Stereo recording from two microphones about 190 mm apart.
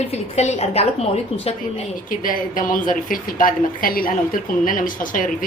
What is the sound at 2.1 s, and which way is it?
A woman's voice, 45° left (ahead or behind).